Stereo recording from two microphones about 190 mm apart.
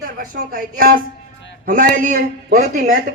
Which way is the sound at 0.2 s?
50° right (ahead or behind).